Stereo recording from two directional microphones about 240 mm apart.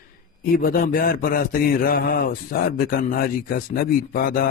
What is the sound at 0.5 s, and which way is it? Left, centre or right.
Speech, left.